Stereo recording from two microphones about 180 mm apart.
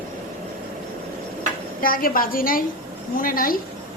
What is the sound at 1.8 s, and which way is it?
A woman's voice, 55° left (ahead or behind).